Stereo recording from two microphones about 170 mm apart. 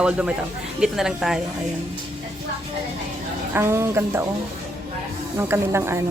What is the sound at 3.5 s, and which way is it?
Speech, 15° right (ahead or behind).